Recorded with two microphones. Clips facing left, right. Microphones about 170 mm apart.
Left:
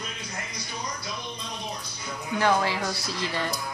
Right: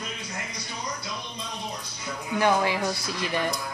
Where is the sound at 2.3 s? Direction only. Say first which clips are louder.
Right 1 dB; 15° right (ahead or behind).